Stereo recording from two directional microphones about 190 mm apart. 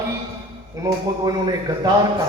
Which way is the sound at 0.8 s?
20° right (ahead or behind).